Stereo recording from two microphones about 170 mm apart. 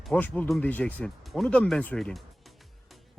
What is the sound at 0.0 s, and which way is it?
Speech, 10° left (ahead or behind).